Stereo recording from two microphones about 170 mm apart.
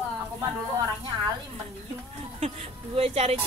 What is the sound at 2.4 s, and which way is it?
A woman's voice, 35° right (ahead or behind).